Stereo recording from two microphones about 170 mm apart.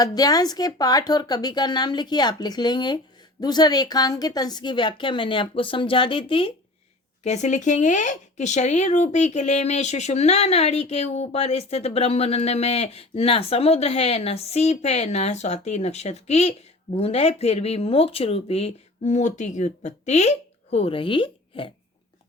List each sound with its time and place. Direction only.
0.0 s a woman's voice: 20° left (ahead or behind)
7.3 s speech: 45° left (ahead or behind)